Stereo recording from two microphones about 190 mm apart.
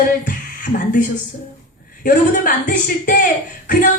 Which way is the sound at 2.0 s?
45° left (ahead or behind).